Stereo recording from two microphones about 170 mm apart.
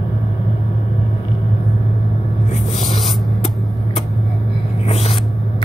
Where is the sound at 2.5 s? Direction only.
45° left (ahead or behind).